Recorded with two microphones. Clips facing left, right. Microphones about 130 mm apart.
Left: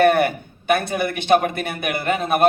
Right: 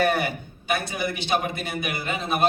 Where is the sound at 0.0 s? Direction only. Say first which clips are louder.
Left 7 dB; 55° left (ahead or behind).